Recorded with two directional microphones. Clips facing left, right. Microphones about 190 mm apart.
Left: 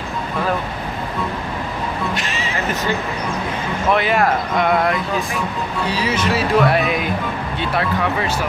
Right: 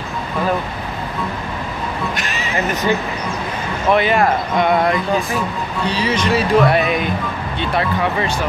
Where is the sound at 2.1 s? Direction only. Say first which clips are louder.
Even; 30° left (ahead or behind).